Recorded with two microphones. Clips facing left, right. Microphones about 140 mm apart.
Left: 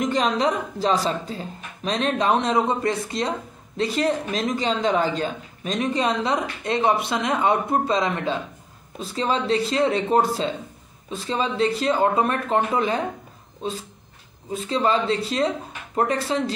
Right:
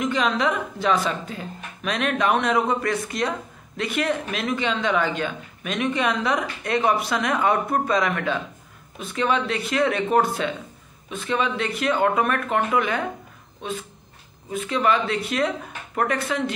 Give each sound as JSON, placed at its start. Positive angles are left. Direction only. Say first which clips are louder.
{"t": 0.0, "sound": "a woman's voice", "louder": "left 1 dB", "side_deg": 40}
{"t": 14.5, "sound": "a woman's voice", "louder": "even", "side_deg": 30}